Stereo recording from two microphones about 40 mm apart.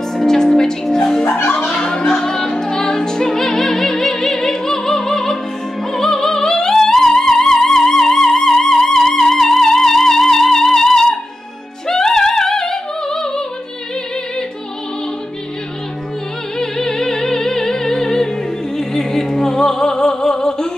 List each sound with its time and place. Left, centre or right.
0.1 s music: centre
11.9 s opera: centre
16.5 s music: centre